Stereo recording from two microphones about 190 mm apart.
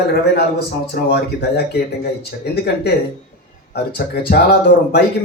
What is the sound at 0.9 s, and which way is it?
Speech, 55° left (ahead or behind).